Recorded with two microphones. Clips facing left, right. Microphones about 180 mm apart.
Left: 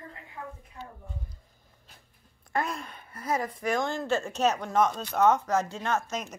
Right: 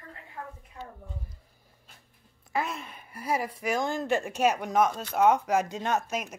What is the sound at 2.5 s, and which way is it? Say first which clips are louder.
Speech: left 1 dB; 5° right (ahead or behind).